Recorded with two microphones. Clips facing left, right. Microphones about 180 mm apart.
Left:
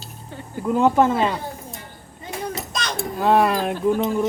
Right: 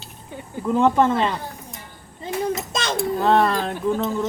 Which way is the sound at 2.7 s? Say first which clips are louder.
Right 3 dB; 25° right (ahead or behind).